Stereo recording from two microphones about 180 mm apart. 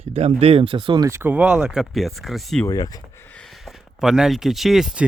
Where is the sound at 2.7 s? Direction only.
20° left (ahead or behind).